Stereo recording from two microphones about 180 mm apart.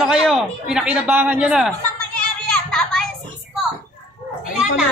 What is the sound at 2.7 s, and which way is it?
Children playing, 5° left (ahead or behind).